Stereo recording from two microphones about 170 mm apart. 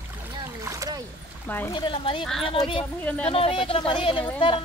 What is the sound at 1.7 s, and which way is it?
Speech, 30° left (ahead or behind).